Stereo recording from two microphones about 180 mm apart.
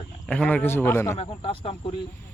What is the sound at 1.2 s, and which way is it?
Speech, 30° left (ahead or behind).